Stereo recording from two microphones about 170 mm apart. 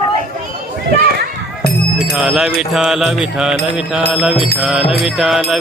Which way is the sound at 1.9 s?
5° right (ahead or behind).